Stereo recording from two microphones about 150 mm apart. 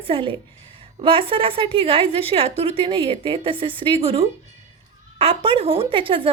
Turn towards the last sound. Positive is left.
turn(degrees=-35)  # may be behind; listen again after turning